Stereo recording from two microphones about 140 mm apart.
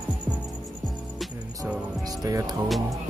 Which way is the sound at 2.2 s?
25° right (ahead or behind).